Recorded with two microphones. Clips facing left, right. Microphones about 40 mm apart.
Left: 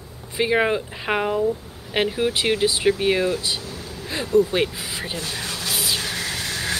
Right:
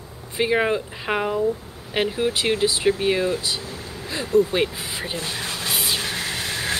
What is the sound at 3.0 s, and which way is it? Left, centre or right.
Speech, centre.